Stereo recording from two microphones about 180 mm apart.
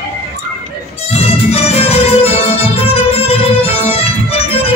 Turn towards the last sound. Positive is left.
turn(degrees=30)  # may be behind; listen again after turning